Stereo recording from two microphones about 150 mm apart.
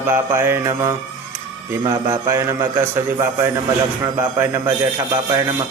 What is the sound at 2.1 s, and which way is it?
A man's voice, 20° right (ahead or behind).